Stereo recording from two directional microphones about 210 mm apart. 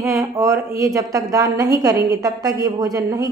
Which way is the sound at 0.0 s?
15° right (ahead or behind).